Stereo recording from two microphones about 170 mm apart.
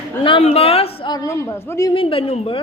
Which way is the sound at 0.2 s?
30° left (ahead or behind).